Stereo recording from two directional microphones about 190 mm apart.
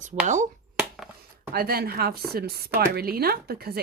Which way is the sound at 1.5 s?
55° right (ahead or behind).